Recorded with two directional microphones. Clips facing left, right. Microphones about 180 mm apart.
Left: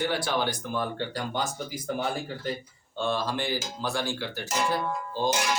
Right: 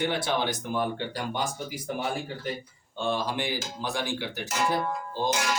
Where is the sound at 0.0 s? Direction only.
20° right (ahead or behind).